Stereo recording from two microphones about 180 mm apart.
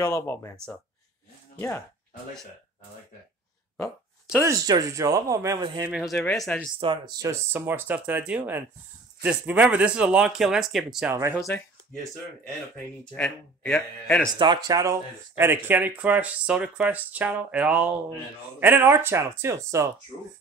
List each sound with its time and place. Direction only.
0.0 s speech: 15° left (ahead or behind)
3.7 s a sound: 15° left (ahead or behind)
4.4 s speech: 20° right (ahead or behind)
5.9 s speech: 5° right (ahead or behind)
6.8 s speech: 25° right (ahead or behind)
7.2 s speech: 10° right (ahead or behind)
11.3 s speech: 15° left (ahead or behind)
13.1 s speech: 5° left (ahead or behind)
14.4 s speech: 25° right (ahead or behind)